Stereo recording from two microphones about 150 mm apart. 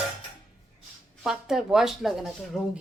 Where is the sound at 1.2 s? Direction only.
5° right (ahead or behind).